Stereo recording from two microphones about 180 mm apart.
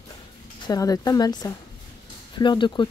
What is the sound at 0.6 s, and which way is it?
Speech, 20° left (ahead or behind).